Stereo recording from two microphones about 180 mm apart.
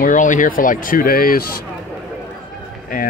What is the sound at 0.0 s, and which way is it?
Speech, 45° left (ahead or behind).